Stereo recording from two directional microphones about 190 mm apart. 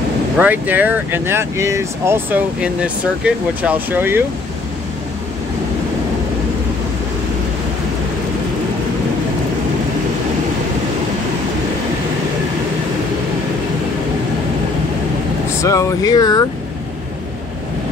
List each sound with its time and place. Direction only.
0.4 s speech: 10° right (ahead or behind)
15.6 s speech: 15° left (ahead or behind)